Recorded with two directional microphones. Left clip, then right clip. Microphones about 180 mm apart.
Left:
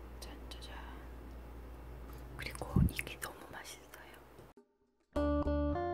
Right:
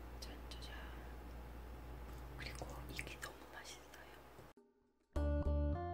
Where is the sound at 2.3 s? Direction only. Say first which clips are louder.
Left 10 dB; 30° left (ahead or behind).